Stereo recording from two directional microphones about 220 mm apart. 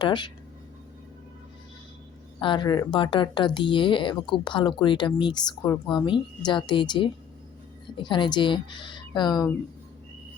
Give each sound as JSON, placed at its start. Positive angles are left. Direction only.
{"t": 0.0, "sound": "speech", "side_deg": 20}
{"t": 2.4, "sound": "speech", "side_deg": 20}